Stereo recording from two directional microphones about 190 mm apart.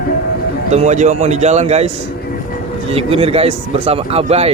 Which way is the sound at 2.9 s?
30° right (ahead or behind).